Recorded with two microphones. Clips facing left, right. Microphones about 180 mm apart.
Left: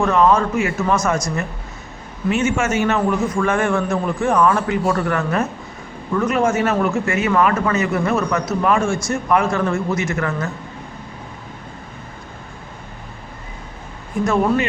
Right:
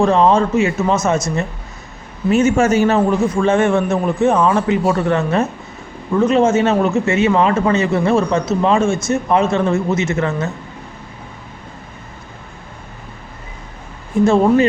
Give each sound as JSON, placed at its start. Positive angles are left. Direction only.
{"t": 0.0, "sound": "speech", "side_deg": -30}
{"t": 2.3, "sound": "speech", "side_deg": -40}
{"t": 14.3, "sound": "speech", "side_deg": -25}